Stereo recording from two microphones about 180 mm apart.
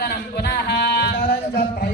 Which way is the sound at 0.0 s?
60° left (ahead or behind).